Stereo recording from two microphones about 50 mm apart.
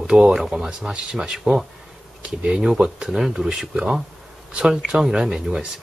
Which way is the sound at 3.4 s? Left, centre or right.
Centre.